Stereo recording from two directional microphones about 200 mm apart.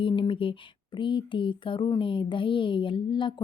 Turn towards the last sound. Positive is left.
turn(degrees=25)  # may be behind; listen again after turning